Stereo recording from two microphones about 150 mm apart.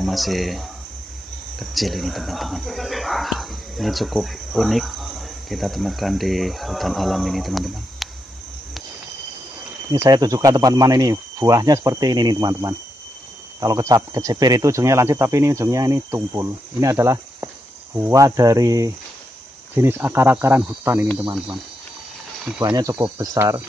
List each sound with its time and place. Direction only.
0.0 s speech: centre (ahead or behind)
9.9 s speech: 25° right (ahead or behind)
22.6 s speech: 25° right (ahead or behind)